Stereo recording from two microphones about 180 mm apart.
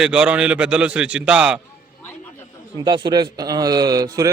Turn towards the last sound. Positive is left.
turn(degrees=-20)  # may be behind; listen again after turning